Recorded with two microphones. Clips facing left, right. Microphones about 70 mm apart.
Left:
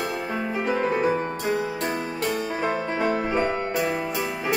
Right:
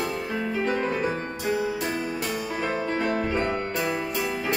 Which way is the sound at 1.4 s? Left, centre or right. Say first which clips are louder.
Left 1 dB; centre.